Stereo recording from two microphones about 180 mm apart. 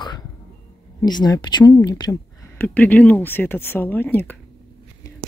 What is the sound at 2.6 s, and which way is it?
Speech, 10° left (ahead or behind).